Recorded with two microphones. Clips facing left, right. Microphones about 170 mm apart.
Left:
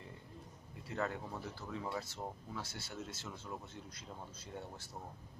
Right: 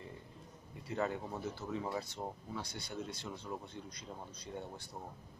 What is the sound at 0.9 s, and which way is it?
Speech, 15° right (ahead or behind).